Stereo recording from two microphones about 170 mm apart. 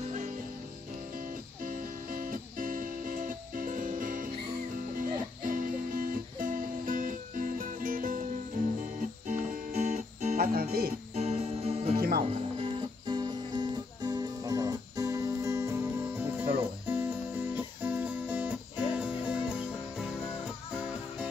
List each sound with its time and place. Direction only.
1.1 s music: 55° right (ahead or behind)
10.3 s music: 60° right (ahead or behind)
10.9 s music: 40° right (ahead or behind); by 16.4 s 15° right (ahead or behind)
16.8 s guitar: 10° right (ahead or behind)
18.9 s music: 5° right (ahead or behind)